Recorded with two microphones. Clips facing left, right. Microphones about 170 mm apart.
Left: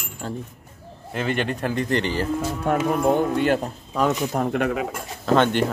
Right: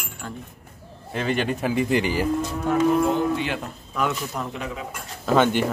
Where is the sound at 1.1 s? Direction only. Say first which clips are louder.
Even; centre (ahead or behind).